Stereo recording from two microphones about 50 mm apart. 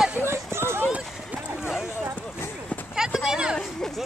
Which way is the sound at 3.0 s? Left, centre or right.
Centre.